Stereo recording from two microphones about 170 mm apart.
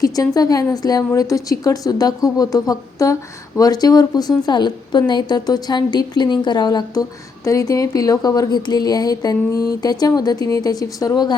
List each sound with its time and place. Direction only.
0.0 s speech: 20° left (ahead or behind)